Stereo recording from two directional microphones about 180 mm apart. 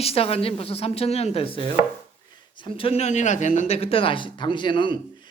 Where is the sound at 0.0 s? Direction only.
35° left (ahead or behind).